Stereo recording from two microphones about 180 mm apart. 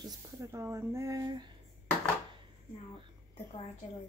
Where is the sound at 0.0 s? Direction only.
15° right (ahead or behind).